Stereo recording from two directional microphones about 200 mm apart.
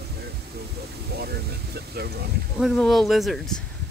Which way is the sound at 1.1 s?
55° right (ahead or behind).